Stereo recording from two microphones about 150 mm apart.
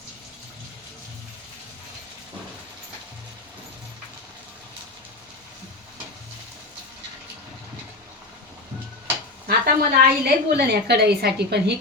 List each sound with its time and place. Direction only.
9.5 s a woman's voice: 90° right